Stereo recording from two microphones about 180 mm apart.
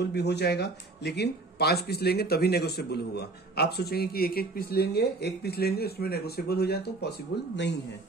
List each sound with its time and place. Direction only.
0.0 s speech: 70° left (ahead or behind)